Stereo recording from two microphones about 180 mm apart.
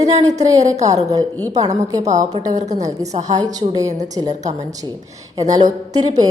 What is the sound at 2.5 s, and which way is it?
Speech, 40° right (ahead or behind).